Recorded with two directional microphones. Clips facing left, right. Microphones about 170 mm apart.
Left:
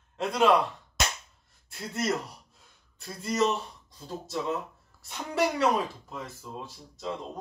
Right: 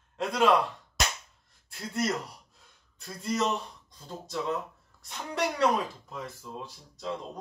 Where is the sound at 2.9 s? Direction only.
Centre (ahead or behind).